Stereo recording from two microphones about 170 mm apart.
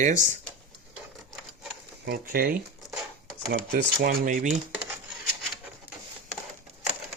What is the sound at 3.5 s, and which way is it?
Speech, 75° right (ahead or behind).